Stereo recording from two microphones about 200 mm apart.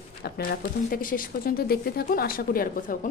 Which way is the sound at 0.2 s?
50° left (ahead or behind).